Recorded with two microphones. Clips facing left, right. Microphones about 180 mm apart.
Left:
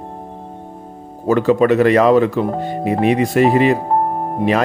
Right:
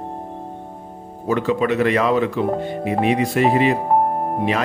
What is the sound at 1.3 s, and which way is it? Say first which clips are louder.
Speech: left 6 dB; 45° left (ahead or behind).